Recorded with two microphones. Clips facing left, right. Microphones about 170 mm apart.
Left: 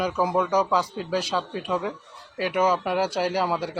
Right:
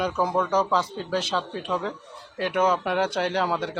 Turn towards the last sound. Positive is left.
turn(degrees=5)  # may be behind; listen again after turning